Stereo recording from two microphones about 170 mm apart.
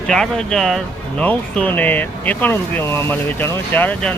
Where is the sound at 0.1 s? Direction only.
5° left (ahead or behind).